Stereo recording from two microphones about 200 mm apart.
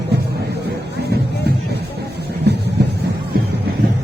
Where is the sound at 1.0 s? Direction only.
55° right (ahead or behind).